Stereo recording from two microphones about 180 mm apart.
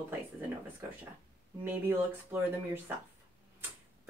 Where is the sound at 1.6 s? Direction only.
10° right (ahead or behind).